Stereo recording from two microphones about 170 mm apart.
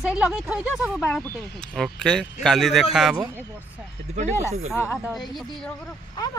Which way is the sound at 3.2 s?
10° right (ahead or behind).